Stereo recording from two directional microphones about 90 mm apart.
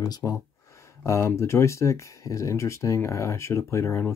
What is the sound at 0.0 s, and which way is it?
Speech, 40° left (ahead or behind).